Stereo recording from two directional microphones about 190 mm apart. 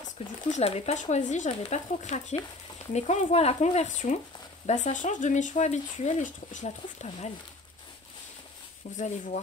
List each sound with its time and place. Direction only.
0.0 s speech: 35° left (ahead or behind)
8.9 s speech: 40° left (ahead or behind)